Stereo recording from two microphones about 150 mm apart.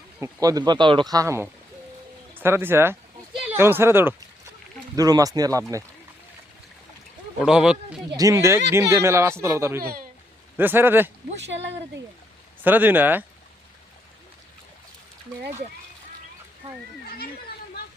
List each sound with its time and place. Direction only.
0.2 s speech: 20° right (ahead or behind)
7.3 s speech: 5° right (ahead or behind)
8.1 s speech: 20° right (ahead or behind)
12.6 s speech: 10° right (ahead or behind)